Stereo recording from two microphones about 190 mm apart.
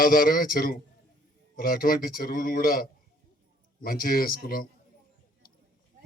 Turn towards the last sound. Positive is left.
turn(degrees=50)  # may be behind; listen again after turning